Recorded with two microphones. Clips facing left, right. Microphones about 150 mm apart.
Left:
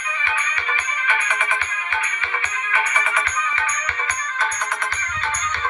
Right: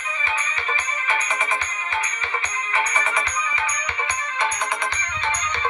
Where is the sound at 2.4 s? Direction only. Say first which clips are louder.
Left 1 dB; 35° right (ahead or behind).